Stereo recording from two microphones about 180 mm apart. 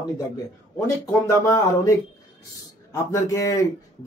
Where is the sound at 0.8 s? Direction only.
15° left (ahead or behind).